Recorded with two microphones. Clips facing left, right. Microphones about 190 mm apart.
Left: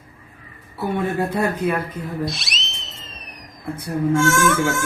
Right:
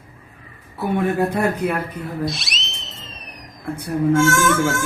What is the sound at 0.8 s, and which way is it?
Speech, 15° right (ahead or behind).